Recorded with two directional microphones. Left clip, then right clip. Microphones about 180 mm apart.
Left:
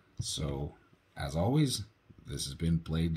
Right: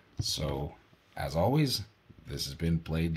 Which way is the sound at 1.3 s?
50° right (ahead or behind).